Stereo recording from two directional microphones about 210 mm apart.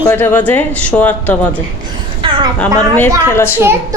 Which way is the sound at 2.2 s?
25° right (ahead or behind).